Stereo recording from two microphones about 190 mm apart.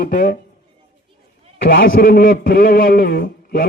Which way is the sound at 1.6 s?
50° left (ahead or behind).